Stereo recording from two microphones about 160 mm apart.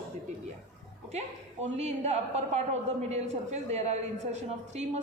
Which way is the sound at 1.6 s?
45° right (ahead or behind).